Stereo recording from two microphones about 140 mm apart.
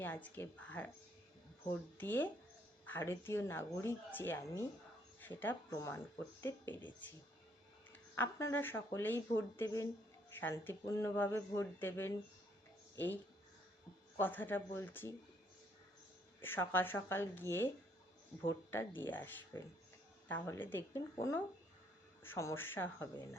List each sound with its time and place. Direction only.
0.0 s speech: 15° left (ahead or behind)
2.0 s speech: 15° left (ahead or behind)
8.1 s speech: 20° left (ahead or behind)
14.2 s speech: 15° left (ahead or behind)
16.4 s speech: 15° left (ahead or behind)